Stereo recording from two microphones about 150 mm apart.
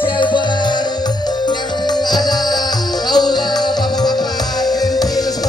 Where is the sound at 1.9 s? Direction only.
25° left (ahead or behind).